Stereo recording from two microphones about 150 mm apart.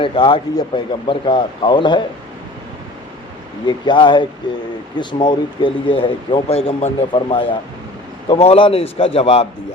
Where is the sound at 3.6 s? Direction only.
30° left (ahead or behind).